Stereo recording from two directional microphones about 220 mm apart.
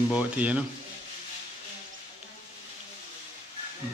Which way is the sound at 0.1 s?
5° right (ahead or behind).